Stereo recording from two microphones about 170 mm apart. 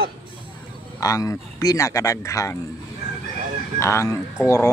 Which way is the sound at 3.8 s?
15° left (ahead or behind).